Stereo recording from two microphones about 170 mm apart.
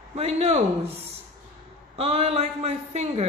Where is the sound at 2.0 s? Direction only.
35° right (ahead or behind).